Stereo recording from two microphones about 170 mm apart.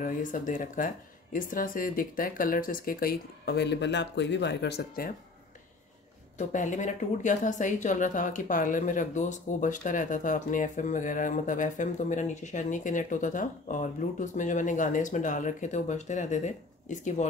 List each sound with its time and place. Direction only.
0.0 s speech: 50° left (ahead or behind)
6.3 s a woman's voice: 50° left (ahead or behind)